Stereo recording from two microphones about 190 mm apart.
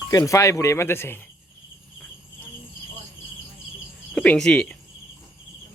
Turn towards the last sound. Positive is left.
turn(degrees=5)  # may be behind; listen again after turning